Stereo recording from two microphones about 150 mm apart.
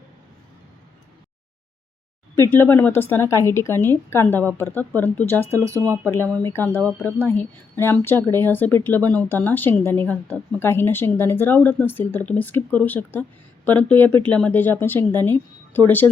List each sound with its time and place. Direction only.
2.3 s speech: 15° left (ahead or behind)
5.5 s speech: 20° right (ahead or behind)
6.1 s speech: 10° left (ahead or behind)